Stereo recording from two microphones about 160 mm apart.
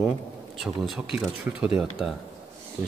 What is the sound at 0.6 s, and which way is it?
Speech, centre (ahead or behind).